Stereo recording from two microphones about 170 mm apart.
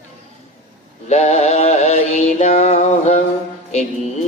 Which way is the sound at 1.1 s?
40° left (ahead or behind).